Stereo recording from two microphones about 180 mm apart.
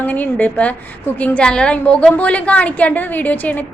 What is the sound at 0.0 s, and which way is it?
A woman's voice, 10° left (ahead or behind).